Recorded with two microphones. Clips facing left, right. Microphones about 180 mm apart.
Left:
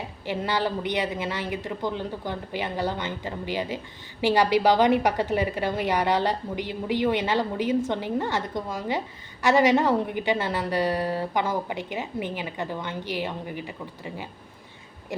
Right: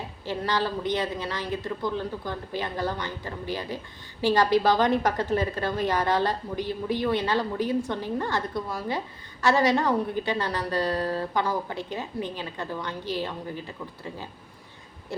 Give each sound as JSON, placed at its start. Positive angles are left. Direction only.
{"t": 0.3, "sound": "a woman's voice", "side_deg": 15}